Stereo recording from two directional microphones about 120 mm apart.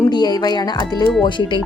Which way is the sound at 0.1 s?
35° left (ahead or behind).